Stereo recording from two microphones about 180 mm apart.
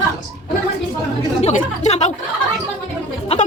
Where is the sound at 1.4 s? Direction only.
40° left (ahead or behind).